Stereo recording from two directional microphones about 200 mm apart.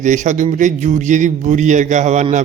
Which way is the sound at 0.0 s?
40° right (ahead or behind).